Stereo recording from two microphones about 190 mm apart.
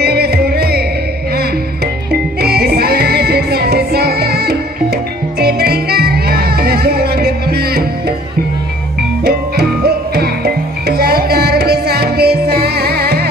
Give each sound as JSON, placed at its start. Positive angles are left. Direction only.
{"t": 0.0, "sound": "music", "side_deg": -55}
{"t": 2.4, "sound": "music", "side_deg": -55}
{"t": 9.2, "sound": "music", "side_deg": -60}